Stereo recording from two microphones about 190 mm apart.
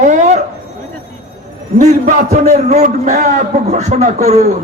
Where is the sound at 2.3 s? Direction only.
35° right (ahead or behind).